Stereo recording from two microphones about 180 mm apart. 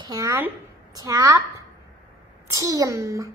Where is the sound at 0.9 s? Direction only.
15° right (ahead or behind).